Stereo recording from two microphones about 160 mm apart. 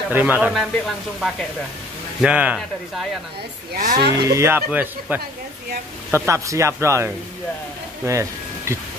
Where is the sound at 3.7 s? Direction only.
55° right (ahead or behind).